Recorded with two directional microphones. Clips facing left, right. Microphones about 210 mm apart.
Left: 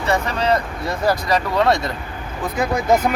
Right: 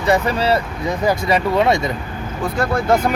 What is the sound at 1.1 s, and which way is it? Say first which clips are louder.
Speech: right 1 dB; 25° right (ahead or behind).